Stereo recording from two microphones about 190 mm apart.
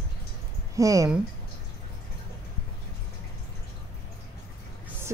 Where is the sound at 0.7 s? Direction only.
15° right (ahead or behind).